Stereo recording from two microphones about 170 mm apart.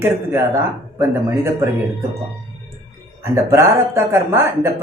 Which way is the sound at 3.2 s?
15° right (ahead or behind).